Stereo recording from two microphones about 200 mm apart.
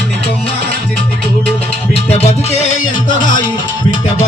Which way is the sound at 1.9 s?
30° left (ahead or behind).